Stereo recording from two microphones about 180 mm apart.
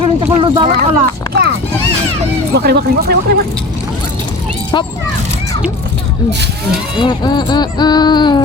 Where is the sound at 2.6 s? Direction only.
60° right (ahead or behind).